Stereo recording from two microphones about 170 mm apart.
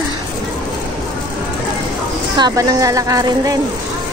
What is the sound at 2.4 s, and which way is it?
A woman's voice, 20° right (ahead or behind).